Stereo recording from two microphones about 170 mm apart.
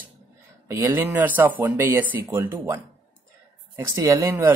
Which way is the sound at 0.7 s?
15° right (ahead or behind).